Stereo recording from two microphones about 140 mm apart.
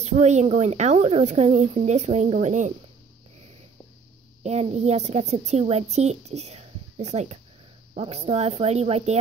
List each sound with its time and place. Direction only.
0.0 s speech: 55° right (ahead or behind)
4.4 s a woman's voice: 50° right (ahead or behind)